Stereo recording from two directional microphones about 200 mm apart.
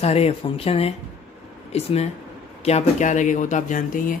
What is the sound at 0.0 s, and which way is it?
Speech, 30° left (ahead or behind).